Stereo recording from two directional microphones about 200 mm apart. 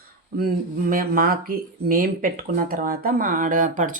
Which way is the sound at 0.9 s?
45° right (ahead or behind).